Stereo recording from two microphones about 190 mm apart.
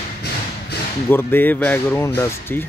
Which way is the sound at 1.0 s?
10° left (ahead or behind).